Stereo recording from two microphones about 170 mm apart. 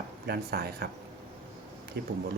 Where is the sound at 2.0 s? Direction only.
75° right (ahead or behind).